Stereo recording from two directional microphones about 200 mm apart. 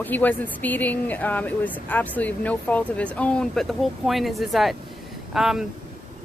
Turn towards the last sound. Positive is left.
turn(degrees=0)  # may be behind; listen again after turning